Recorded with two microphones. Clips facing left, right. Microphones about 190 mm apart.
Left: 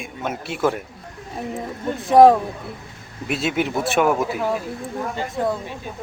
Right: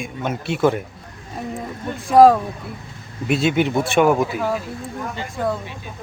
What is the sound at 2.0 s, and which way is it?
Speech, 20° left (ahead or behind).